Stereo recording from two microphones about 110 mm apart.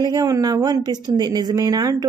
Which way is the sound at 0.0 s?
35° right (ahead or behind).